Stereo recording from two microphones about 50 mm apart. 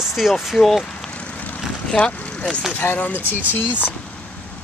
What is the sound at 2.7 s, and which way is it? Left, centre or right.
Speech, left.